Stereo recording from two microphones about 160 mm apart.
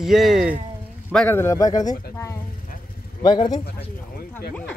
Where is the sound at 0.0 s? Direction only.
Centre (ahead or behind).